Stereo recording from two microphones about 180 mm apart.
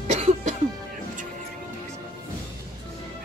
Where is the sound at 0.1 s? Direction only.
40° right (ahead or behind).